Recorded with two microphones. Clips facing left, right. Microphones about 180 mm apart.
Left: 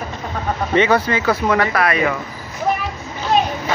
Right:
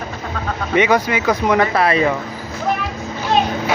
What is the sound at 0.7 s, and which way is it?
Speech, 10° right (ahead or behind).